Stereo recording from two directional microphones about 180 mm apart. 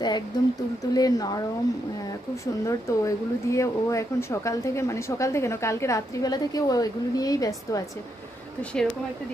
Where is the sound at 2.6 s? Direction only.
15° left (ahead or behind).